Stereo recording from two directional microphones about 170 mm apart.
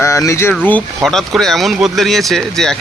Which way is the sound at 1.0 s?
Centre (ahead or behind).